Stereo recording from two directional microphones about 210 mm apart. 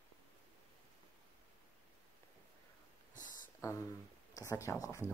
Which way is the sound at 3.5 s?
15° left (ahead or behind).